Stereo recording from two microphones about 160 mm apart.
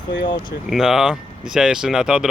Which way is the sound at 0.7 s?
Centre (ahead or behind).